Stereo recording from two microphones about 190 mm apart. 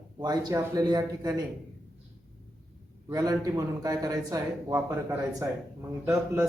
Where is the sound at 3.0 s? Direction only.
20° right (ahead or behind).